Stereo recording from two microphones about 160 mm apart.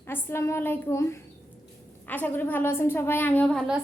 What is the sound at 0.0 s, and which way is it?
A woman's voice, 15° left (ahead or behind).